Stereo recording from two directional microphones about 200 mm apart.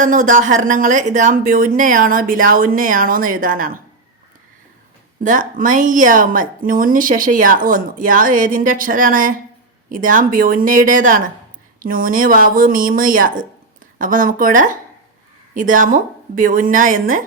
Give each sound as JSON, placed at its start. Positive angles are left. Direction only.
{"t": 0.0, "sound": "speech", "side_deg": -40}
{"t": 5.2, "sound": "a woman's voice", "side_deg": -40}